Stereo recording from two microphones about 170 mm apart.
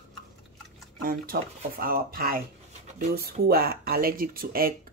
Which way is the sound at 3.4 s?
65° right (ahead or behind).